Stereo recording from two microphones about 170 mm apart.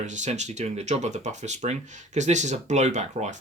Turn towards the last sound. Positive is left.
turn(degrees=-40)  # may be behind; listen again after turning